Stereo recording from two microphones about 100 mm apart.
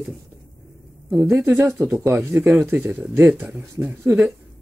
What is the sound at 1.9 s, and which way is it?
Speech, 30° right (ahead or behind).